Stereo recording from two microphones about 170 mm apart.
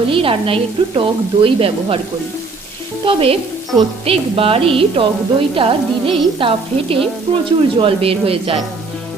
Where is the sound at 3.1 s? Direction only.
35° right (ahead or behind).